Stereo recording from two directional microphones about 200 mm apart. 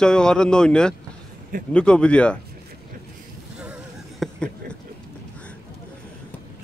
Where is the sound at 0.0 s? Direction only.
5° left (ahead or behind).